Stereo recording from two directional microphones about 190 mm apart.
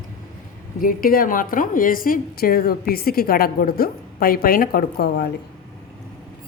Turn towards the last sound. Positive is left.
turn(degrees=50)  # may be behind; listen again after turning